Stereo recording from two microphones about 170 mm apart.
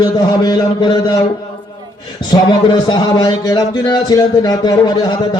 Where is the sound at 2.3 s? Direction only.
25° left (ahead or behind).